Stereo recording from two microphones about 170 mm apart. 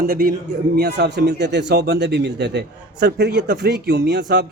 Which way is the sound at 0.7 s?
75° right (ahead or behind).